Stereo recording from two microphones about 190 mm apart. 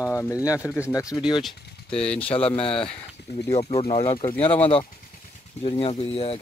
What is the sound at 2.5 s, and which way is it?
Speech, 30° left (ahead or behind).